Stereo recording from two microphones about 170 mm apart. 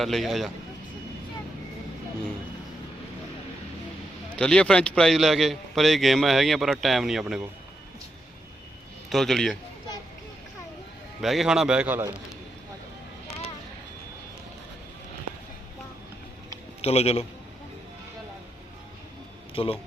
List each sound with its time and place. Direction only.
0.0 s a man's voice: centre (ahead or behind)
4.3 s a man's voice: 5° left (ahead or behind)
9.0 s a man's voice: centre (ahead or behind)
11.2 s a man's voice: centre (ahead or behind)
16.8 s a man's voice: 35° left (ahead or behind)
19.6 s a man's voice: 35° left (ahead or behind)